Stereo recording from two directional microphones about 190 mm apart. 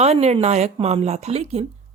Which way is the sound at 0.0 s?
35° right (ahead or behind).